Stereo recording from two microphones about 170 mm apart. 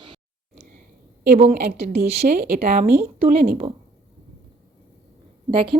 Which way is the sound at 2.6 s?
40° right (ahead or behind).